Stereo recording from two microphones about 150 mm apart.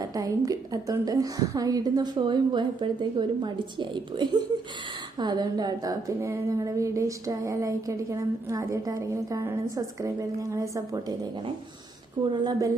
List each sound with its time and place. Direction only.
0.0 s a woman's voice: 25° right (ahead or behind)